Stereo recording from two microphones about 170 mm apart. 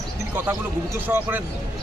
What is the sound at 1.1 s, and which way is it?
Speech, 10° right (ahead or behind).